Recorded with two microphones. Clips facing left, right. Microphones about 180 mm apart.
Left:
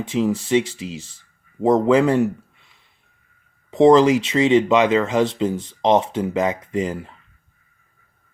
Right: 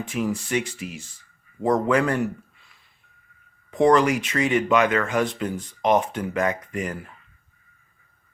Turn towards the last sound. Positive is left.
turn(degrees=25)  # may be behind; listen again after turning